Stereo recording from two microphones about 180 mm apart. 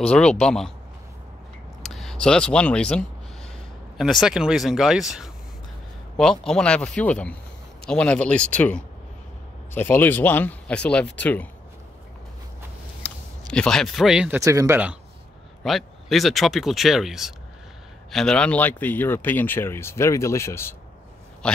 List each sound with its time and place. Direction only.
0.1 s speech: 5° left (ahead or behind)
1.8 s speech: centre (ahead or behind)
13.0 s a sound: 5° left (ahead or behind)
13.5 s speech: 5° left (ahead or behind)
14.4 s speech: 15° right (ahead or behind)
15.6 s speech: centre (ahead or behind)